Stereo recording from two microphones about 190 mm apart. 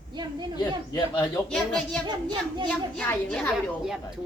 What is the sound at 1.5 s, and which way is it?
A child's voice, 5° left (ahead or behind).